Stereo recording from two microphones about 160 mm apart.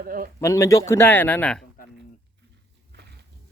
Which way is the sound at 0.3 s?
20° left (ahead or behind).